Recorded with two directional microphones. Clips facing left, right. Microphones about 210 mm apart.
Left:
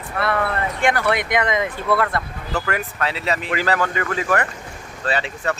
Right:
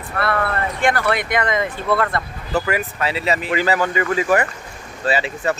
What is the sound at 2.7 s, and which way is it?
Speech, 5° right (ahead or behind).